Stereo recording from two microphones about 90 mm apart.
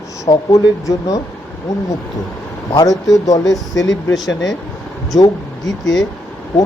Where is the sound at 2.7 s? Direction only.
45° left (ahead or behind).